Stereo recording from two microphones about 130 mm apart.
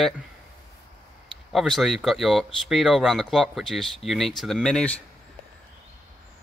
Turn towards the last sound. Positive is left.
turn(degrees=10)  # may be behind; listen again after turning